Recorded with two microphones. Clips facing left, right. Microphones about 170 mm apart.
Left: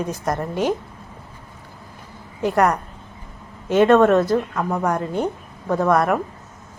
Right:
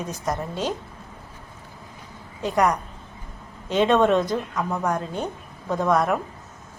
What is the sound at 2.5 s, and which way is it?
Speech, 55° left (ahead or behind).